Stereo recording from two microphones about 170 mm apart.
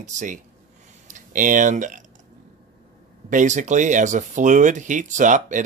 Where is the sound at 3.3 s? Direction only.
45° right (ahead or behind).